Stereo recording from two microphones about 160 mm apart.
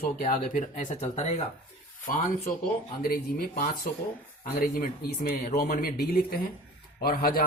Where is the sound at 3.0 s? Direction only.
70° left (ahead or behind).